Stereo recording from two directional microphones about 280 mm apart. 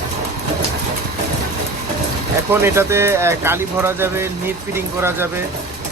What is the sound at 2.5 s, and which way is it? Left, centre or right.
Speech, centre.